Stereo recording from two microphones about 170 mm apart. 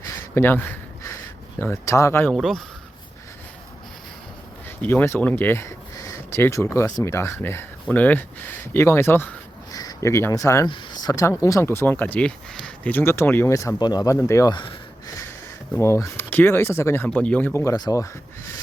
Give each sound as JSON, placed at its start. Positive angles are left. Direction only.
{"t": 0.3, "sound": "speech", "side_deg": 10}
{"t": 2.3, "sound": "speech", "side_deg": 0}
{"t": 4.8, "sound": "speech", "side_deg": 10}
{"t": 15.7, "sound": "speech", "side_deg": 15}